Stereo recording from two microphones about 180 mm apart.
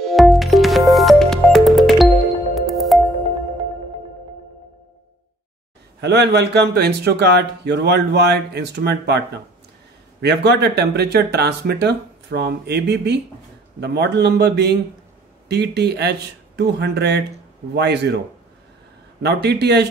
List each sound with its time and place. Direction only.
0.0 s music: centre (ahead or behind)
5.9 s a man's voice: 70° right (ahead or behind)
19.2 s a man's voice: 65° right (ahead or behind)